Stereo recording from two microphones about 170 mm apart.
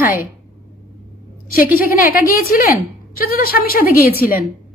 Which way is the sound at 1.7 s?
60° left (ahead or behind).